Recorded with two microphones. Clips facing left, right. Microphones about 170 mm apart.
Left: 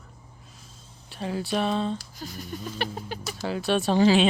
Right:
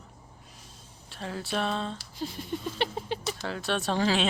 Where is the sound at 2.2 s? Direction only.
25° right (ahead or behind).